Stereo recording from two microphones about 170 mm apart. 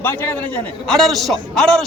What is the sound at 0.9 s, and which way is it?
Speech, centre (ahead or behind).